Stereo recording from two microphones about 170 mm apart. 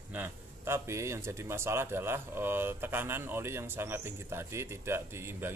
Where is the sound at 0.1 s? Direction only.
10° right (ahead or behind).